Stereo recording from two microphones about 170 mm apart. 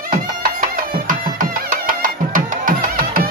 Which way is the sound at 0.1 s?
55° right (ahead or behind).